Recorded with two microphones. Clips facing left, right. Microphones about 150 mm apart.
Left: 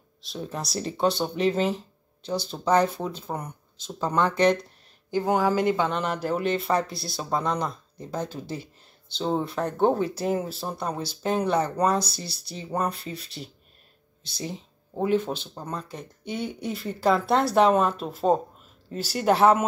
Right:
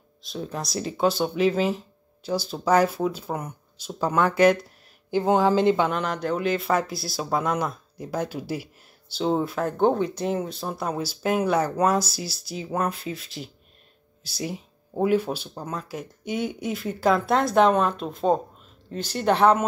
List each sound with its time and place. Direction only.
0.2 s speech: centre (ahead or behind)
5.1 s speech: 20° right (ahead or behind)
5.9 s speech: centre (ahead or behind)
14.4 s speech: 10° right (ahead or behind); by 19.6 s 5° left (ahead or behind)